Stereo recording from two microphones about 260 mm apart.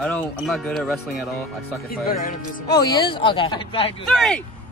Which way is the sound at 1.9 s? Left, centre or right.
Left.